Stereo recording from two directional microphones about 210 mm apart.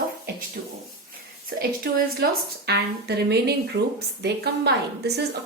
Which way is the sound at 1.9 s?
45° right (ahead or behind).